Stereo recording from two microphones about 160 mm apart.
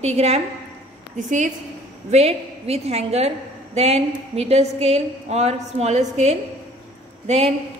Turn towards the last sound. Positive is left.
turn(degrees=-40)  # may be behind; listen again after turning